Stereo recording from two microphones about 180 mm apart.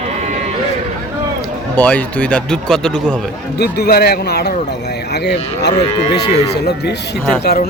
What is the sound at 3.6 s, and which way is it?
Speech, 60° left (ahead or behind).